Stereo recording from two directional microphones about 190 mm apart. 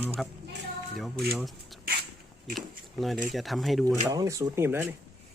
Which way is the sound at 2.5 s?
Centre (ahead or behind).